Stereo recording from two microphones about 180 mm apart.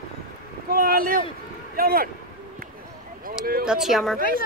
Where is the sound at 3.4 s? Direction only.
55° right (ahead or behind).